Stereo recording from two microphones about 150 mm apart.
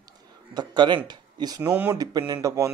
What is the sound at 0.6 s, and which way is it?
Speech, 30° right (ahead or behind).